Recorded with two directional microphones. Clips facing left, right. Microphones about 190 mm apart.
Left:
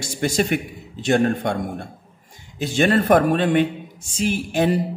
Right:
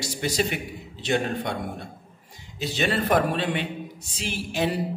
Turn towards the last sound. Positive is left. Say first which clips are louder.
# left 7 dB
turn(degrees=50)  # may be behind; listen again after turning